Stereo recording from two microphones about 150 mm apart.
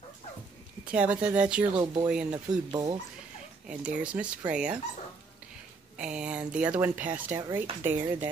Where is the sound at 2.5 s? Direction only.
25° right (ahead or behind).